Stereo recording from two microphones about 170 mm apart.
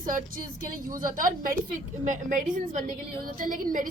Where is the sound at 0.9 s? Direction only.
55° right (ahead or behind).